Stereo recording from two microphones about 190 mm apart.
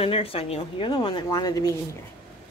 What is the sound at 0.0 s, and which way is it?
Speech, 30° left (ahead or behind).